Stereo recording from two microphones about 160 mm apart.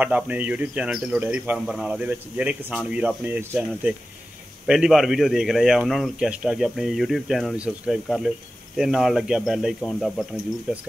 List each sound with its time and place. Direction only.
0.0 s speech: 10° right (ahead or behind)